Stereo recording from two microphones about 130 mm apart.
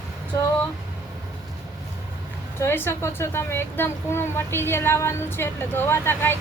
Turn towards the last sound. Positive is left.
turn(degrees=15)  # may be behind; listen again after turning